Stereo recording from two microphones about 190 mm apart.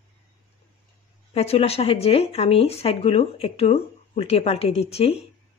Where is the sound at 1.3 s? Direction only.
30° left (ahead or behind).